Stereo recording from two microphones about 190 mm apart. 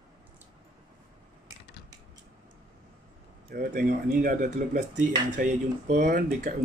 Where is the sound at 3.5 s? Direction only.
50° right (ahead or behind).